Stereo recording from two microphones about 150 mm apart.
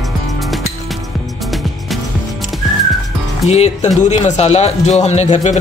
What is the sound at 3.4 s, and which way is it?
Speech, 45° left (ahead or behind).